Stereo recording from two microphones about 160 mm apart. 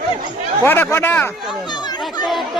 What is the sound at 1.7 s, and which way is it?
Chatter, 25° left (ahead or behind).